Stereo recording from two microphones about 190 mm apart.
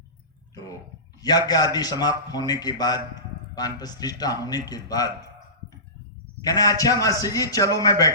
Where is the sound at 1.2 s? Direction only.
20° left (ahead or behind).